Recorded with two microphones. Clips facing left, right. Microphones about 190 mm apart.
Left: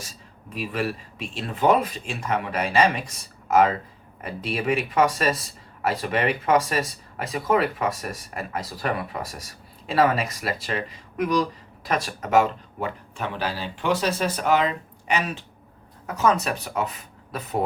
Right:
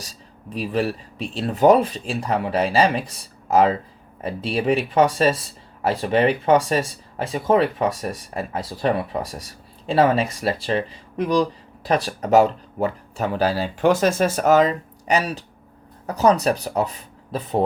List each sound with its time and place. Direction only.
0.0 s speech: 35° right (ahead or behind)